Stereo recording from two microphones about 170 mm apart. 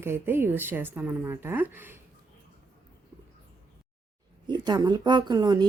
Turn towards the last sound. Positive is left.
turn(degrees=-25)  # may be behind; listen again after turning